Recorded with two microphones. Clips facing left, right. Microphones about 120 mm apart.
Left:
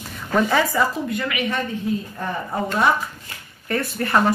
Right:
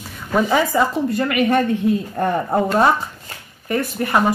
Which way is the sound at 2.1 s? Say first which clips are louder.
Right 8 dB; 60° right (ahead or behind).